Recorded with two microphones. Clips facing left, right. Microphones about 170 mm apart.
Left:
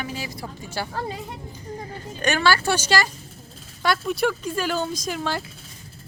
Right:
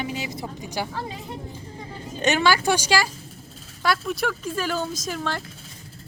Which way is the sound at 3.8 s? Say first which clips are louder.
Left 2 dB; centre (ahead or behind).